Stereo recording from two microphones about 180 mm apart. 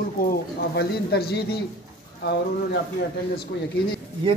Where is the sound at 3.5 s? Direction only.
65° left (ahead or behind).